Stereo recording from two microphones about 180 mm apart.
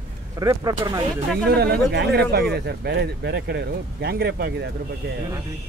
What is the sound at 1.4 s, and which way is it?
Speech, 65° right (ahead or behind).